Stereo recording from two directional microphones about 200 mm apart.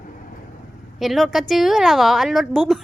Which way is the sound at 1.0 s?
Centre (ahead or behind).